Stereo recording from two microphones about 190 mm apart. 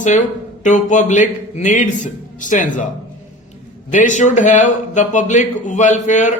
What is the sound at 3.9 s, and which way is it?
A man's voice, 40° left (ahead or behind).